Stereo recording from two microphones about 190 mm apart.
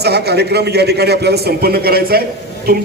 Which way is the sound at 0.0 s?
60° right (ahead or behind).